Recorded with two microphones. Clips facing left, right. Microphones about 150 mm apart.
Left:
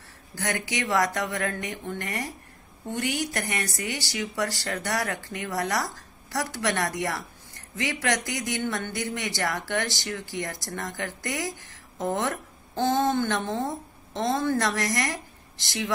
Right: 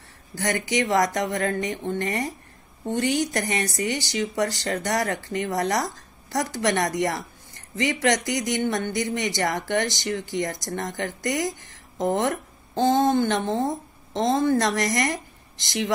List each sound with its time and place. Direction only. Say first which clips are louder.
0.4 s speech: right 5 dB; 15° right (ahead or behind)